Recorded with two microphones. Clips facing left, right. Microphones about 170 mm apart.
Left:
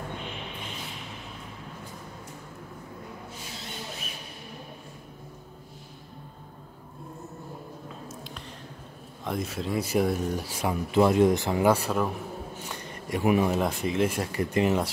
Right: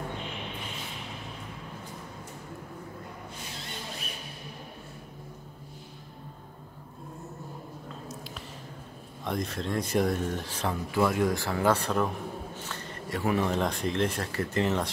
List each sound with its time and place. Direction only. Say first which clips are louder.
9.2 s speech: left 1 dB; 5° left (ahead or behind)
10.9 s speech: left 6 dB; 25° left (ahead or behind)